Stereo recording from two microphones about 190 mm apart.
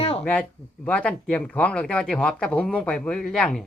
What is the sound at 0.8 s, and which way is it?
Speech, 5° left (ahead or behind).